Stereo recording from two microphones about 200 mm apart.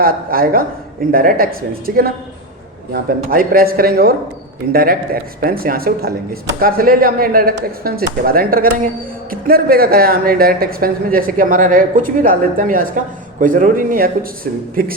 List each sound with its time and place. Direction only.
0.0 s speech: 45° right (ahead or behind)